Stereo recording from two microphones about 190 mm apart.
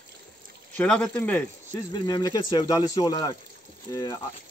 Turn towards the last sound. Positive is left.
turn(degrees=20)  # may be behind; listen again after turning